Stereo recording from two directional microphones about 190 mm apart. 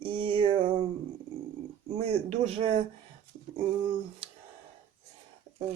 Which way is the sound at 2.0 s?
35° right (ahead or behind).